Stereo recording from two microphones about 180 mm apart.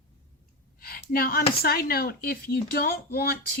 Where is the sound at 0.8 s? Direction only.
55° left (ahead or behind).